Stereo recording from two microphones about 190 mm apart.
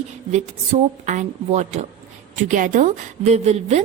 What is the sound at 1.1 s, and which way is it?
A woman's voice, 40° right (ahead or behind).